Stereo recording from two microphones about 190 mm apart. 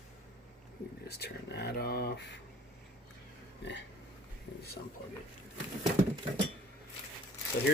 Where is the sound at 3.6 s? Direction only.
65° left (ahead or behind).